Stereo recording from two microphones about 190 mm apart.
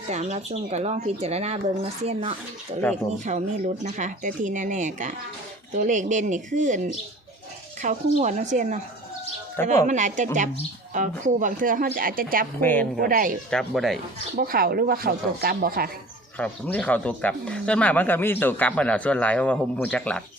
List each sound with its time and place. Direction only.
0.1 s speech: 35° right (ahead or behind)
9.8 s speech: 40° right (ahead or behind)
12.5 s speech: 10° left (ahead or behind)
13.0 s speech: 45° right (ahead or behind)
13.5 s speech: centre (ahead or behind)
14.3 s speech: 50° right (ahead or behind)
16.4 s speech: 5° left (ahead or behind)